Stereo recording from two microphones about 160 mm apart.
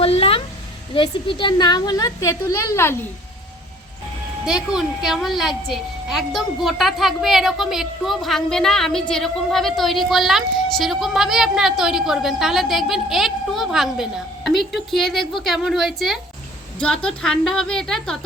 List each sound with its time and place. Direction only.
0.0 s a sound: 35° left (ahead or behind)
0.9 s a woman's voice: 30° left (ahead or behind); by 3.0 s 15° left (ahead or behind)
4.4 s a woman's voice: 5° right (ahead or behind)